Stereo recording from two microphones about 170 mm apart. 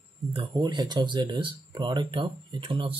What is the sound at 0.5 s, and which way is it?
Speech, 25° right (ahead or behind).